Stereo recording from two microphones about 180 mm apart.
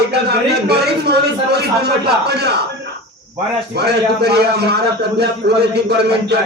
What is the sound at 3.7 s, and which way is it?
Speech, 65° right (ahead or behind).